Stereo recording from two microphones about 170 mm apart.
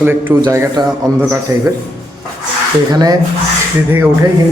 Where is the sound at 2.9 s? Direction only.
20° right (ahead or behind).